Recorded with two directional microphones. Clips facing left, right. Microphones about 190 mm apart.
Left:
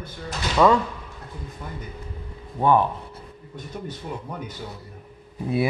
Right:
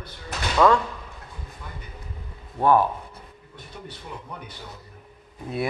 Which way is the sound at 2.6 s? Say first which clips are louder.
Even; 5° right (ahead or behind).